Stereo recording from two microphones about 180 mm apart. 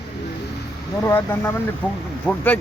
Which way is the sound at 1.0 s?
15° left (ahead or behind).